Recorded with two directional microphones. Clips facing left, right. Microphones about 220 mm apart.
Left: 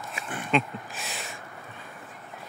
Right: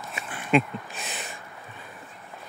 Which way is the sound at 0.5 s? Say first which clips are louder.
Right 4 dB; centre (ahead or behind).